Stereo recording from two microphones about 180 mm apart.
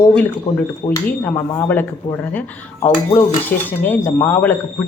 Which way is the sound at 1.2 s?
10° left (ahead or behind).